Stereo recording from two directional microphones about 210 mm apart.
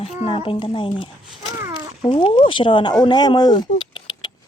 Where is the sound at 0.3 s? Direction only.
25° left (ahead or behind).